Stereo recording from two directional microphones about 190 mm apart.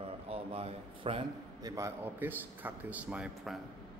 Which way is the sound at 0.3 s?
30° right (ahead or behind).